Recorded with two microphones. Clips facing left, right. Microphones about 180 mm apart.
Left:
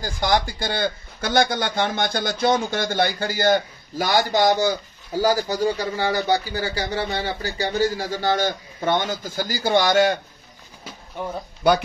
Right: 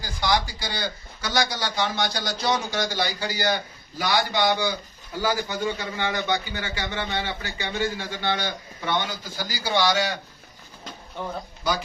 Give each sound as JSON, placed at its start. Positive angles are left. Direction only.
{"t": 0.0, "sound": "a man's voice", "side_deg": 50}
{"t": 10.8, "sound": "a sound", "side_deg": 5}
{"t": 11.6, "sound": "speech", "side_deg": 60}